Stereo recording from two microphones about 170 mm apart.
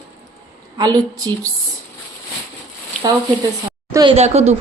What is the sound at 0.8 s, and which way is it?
Speech, 20° right (ahead or behind).